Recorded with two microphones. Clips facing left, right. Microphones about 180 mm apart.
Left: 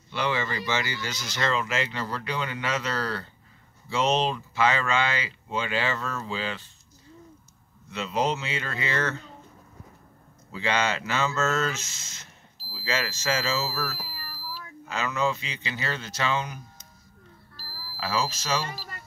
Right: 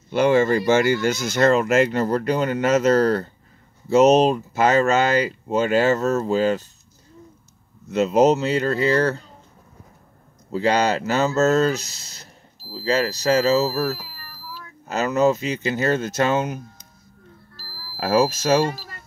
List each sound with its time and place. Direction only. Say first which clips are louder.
0.1 s speech: right 12 dB; 45° right (ahead or behind)
7.9 s speech: right 11 dB; 45° right (ahead or behind)
10.5 s speech: right 8 dB; 40° right (ahead or behind)
17.9 s speech: right 10 dB; 50° right (ahead or behind)